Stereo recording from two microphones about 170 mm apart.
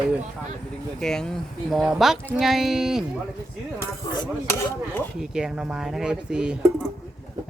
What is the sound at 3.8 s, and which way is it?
Speech, 25° left (ahead or behind).